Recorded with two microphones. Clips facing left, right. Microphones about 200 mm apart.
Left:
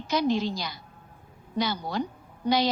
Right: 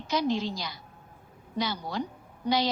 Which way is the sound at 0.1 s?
70° left (ahead or behind).